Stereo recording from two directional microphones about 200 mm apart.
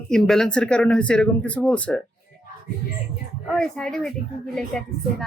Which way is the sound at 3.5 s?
5° left (ahead or behind).